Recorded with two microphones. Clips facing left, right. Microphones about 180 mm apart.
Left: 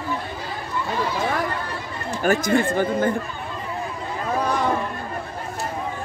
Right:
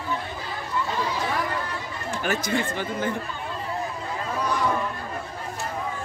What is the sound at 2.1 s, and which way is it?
Speech, 45° left (ahead or behind).